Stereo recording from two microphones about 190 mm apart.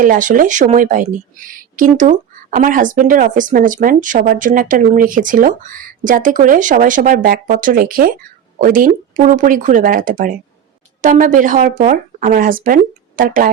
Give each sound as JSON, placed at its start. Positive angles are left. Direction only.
{"t": 0.0, "sound": "speech", "side_deg": -45}